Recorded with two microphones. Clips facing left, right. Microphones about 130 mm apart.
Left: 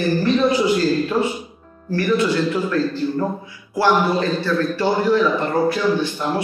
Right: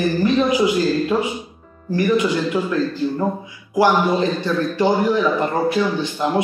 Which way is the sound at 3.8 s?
15° right (ahead or behind).